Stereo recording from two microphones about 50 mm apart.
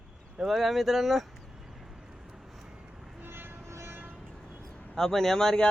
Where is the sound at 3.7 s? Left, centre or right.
Right.